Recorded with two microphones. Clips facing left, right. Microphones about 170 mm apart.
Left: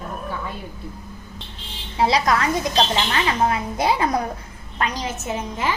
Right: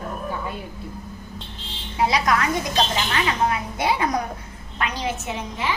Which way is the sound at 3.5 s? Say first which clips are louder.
Left 2 dB; 35° left (ahead or behind).